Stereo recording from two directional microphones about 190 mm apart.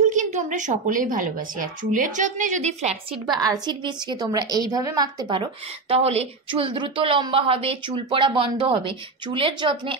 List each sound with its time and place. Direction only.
0.1 s a woman's voice: 40° right (ahead or behind)
3.3 s a woman's voice: 20° right (ahead or behind)